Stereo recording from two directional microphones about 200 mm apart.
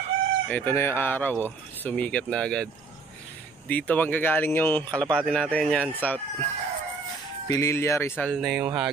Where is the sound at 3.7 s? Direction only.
10° left (ahead or behind).